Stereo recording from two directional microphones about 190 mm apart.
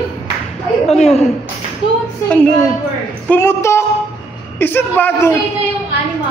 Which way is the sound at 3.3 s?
10° left (ahead or behind).